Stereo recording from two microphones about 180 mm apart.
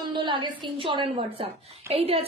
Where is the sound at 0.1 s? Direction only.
25° right (ahead or behind).